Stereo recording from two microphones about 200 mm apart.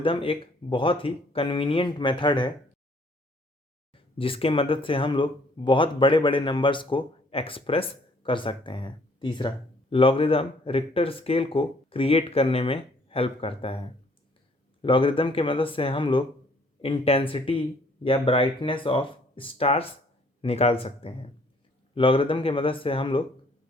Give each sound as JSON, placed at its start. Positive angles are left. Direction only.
{"t": 0.0, "sound": "speech", "side_deg": 25}
{"t": 3.9, "sound": "speech", "side_deg": 25}